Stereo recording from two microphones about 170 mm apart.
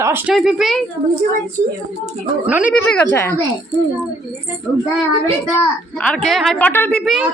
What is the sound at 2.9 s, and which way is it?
Speech, 10° left (ahead or behind).